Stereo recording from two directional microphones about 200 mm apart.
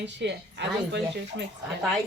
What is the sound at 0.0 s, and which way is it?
A woman's voice, 60° right (ahead or behind).